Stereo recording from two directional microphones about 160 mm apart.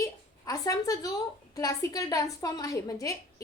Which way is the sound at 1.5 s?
20° left (ahead or behind).